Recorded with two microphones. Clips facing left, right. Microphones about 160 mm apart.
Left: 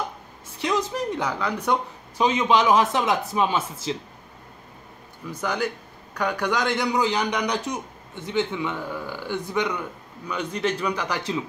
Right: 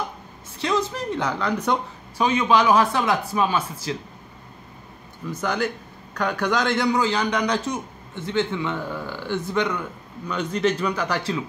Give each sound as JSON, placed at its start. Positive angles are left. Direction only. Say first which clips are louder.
{"t": 0.6, "sound": "speech", "louder": "right 1 dB", "side_deg": 15}
{"t": 5.3, "sound": "a man's voice", "louder": "right 2 dB", "side_deg": 10}